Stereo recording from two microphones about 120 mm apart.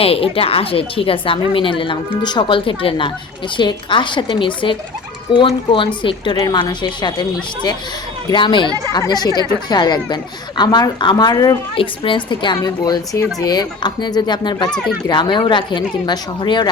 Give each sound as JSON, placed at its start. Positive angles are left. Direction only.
{"t": 0.0, "sound": "a woman's voice", "side_deg": 50}
{"t": 11.7, "sound": "a woman's voice", "side_deg": 45}
{"t": 14.7, "sound": "speech", "side_deg": 5}
{"t": 15.1, "sound": "a woman's voice", "side_deg": 40}